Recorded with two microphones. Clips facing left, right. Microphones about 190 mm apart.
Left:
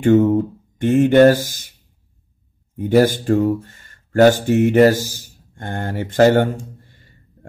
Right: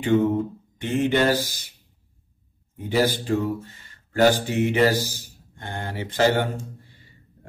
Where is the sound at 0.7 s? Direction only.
50° left (ahead or behind).